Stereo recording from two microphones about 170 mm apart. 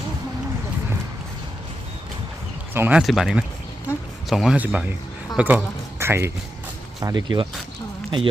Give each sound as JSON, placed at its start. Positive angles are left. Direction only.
{"t": 2.7, "sound": "speech", "side_deg": -10}
{"t": 3.0, "sound": "speech", "side_deg": 0}